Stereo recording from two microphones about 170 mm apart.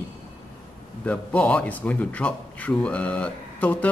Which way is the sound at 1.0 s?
5° left (ahead or behind).